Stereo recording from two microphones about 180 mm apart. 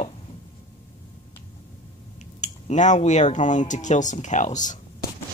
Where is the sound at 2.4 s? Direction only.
40° left (ahead or behind).